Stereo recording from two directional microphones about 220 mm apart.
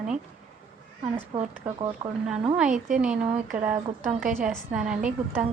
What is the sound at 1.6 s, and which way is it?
A woman's voice, 5° right (ahead or behind).